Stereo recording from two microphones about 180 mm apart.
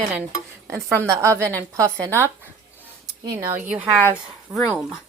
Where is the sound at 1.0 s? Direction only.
15° right (ahead or behind).